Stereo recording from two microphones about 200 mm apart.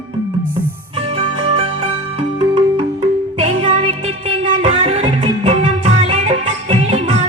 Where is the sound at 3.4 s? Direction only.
30° right (ahead or behind).